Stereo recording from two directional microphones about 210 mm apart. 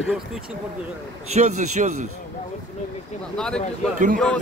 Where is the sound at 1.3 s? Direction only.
35° right (ahead or behind).